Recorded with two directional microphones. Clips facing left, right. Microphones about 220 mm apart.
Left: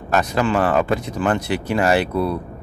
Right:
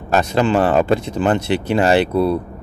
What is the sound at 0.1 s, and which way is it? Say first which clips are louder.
Speech: right 3 dB; 25° right (ahead or behind).